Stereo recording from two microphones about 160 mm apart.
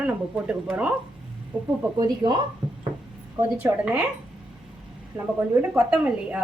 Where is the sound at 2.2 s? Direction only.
30° right (ahead or behind).